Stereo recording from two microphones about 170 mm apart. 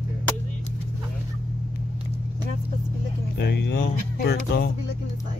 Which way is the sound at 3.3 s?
80° left.